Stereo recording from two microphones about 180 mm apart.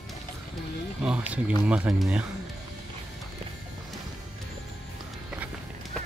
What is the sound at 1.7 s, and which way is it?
Speech, 5° right (ahead or behind).